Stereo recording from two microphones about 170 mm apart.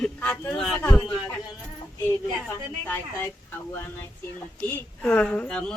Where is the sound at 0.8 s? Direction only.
15° left (ahead or behind).